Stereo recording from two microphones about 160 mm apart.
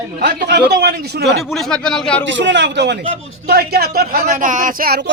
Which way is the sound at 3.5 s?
75° right (ahead or behind).